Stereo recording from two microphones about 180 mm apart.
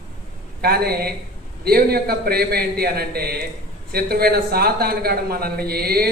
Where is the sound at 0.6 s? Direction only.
60° right (ahead or behind).